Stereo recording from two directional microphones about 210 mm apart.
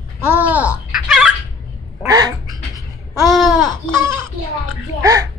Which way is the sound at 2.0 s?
15° right (ahead or behind).